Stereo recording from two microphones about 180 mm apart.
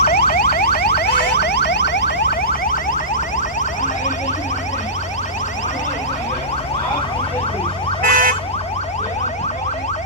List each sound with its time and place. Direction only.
0.0 s car alarm: 60° left (ahead or behind)
8.0 s car alarm: 50° right (ahead or behind)